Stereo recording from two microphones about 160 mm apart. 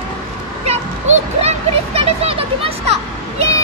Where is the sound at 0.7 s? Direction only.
40° right (ahead or behind).